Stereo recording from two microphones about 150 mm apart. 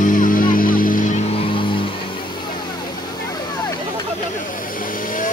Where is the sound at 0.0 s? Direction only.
60° left (ahead or behind).